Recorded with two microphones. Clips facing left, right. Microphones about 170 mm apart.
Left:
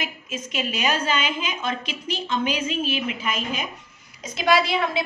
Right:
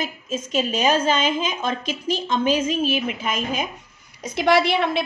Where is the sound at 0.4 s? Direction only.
45° right (ahead or behind).